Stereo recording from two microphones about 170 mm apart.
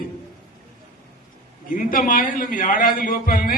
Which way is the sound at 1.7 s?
50° left (ahead or behind).